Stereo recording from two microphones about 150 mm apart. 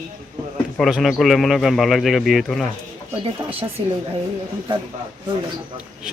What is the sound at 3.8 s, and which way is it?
Speech, 35° right (ahead or behind).